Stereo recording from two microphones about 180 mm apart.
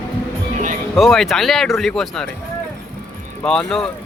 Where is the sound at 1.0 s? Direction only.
Centre (ahead or behind).